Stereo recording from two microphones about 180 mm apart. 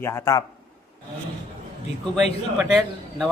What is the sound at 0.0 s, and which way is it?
Speech, 15° left (ahead or behind).